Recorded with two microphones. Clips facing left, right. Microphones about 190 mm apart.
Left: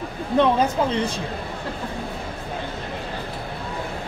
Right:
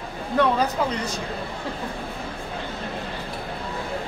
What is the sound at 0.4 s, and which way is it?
Speech, 25° left (ahead or behind).